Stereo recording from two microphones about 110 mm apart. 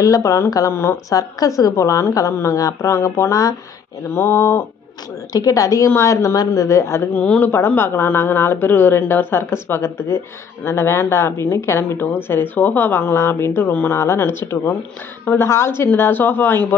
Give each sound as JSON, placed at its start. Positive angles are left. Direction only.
{"t": 0.0, "sound": "speech", "side_deg": 30}
{"t": 5.3, "sound": "a woman's voice", "side_deg": 35}
{"t": 7.2, "sound": "speech", "side_deg": 15}